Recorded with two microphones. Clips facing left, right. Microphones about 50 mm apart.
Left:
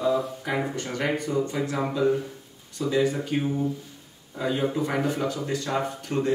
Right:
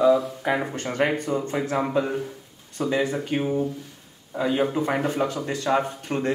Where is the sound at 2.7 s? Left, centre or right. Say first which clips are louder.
Even; right.